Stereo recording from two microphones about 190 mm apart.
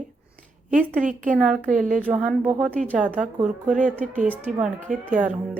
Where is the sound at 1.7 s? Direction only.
45° right (ahead or behind).